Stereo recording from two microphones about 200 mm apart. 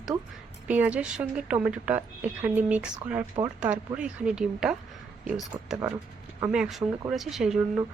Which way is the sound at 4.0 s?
5° right (ahead or behind).